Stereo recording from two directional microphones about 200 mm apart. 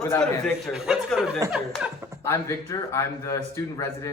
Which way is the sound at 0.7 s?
5° right (ahead or behind).